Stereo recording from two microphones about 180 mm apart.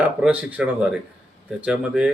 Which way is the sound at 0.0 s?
5° right (ahead or behind).